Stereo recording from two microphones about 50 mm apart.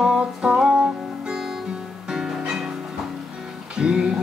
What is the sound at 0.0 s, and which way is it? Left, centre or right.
Music, centre.